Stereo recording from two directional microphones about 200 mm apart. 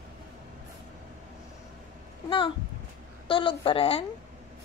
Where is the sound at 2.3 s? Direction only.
25° left (ahead or behind).